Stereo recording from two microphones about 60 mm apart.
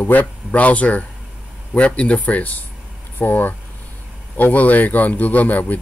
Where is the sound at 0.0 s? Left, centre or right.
Left.